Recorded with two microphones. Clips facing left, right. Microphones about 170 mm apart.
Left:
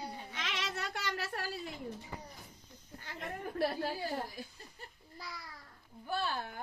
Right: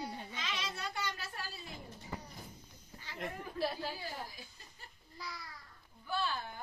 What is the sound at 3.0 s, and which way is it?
Chuckle, 55° left (ahead or behind).